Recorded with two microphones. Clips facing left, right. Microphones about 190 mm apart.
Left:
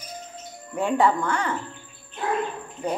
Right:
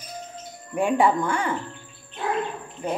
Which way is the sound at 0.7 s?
15° right (ahead or behind).